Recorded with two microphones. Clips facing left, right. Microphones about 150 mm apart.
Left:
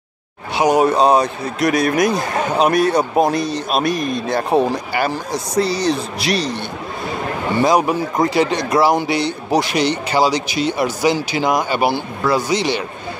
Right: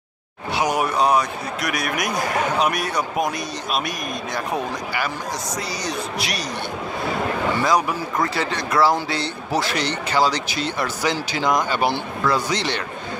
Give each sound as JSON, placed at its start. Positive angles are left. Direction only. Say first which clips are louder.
{"t": 0.6, "sound": "speech", "louder": "left 7 dB", "side_deg": 25}
{"t": 7.6, "sound": "speech", "louder": "left 8 dB", "side_deg": 25}